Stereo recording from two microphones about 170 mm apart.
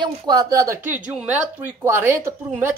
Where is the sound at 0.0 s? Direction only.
25° right (ahead or behind).